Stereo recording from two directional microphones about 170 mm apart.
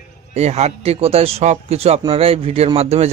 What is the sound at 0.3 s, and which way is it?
A man's voice, 40° right (ahead or behind).